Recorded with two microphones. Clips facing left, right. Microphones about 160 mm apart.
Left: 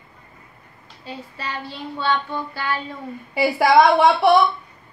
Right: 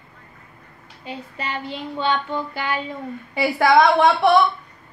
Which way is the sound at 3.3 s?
5° left (ahead or behind).